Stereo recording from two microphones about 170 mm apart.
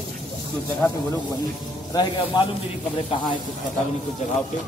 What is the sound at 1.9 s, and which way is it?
Speech, 25° left (ahead or behind).